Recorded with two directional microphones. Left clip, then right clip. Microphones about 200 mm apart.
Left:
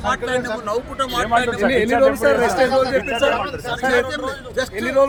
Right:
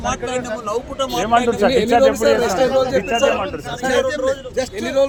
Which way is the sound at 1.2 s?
35° right (ahead or behind).